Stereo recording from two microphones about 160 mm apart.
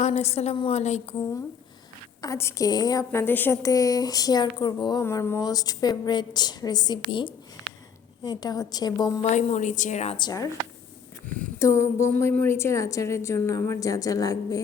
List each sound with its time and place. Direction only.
0.0 s a woman's voice: 40° left (ahead or behind)
2.2 s a woman's voice: 20° left (ahead or behind)
5.0 s a woman's voice: 15° left (ahead or behind)
9.2 s a woman's voice: 45° left (ahead or behind)
10.2 s a woman's voice: 25° left (ahead or behind)
11.6 s a woman's voice: 15° left (ahead or behind)